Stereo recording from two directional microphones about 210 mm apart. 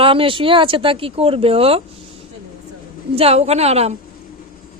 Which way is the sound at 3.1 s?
30° right (ahead or behind).